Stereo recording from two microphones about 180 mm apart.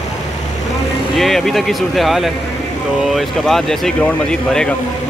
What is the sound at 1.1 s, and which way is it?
Speech, centre (ahead or behind).